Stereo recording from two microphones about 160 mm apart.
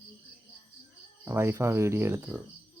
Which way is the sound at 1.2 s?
15° right (ahead or behind).